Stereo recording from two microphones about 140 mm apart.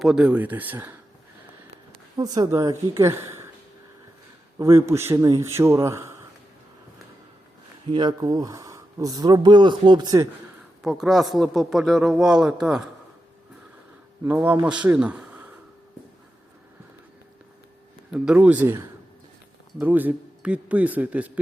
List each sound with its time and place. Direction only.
0.0 s speech: 5° right (ahead or behind)
2.1 s speech: 30° right (ahead or behind)
4.5 s speech: 20° right (ahead or behind)
7.9 s speech: 30° right (ahead or behind)
10.8 s speech: 5° right (ahead or behind)
14.3 s speech: 10° right (ahead or behind)
18.3 s speech: 10° right (ahead or behind)